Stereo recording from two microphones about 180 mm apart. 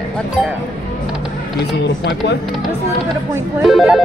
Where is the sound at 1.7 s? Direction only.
65° left (ahead or behind).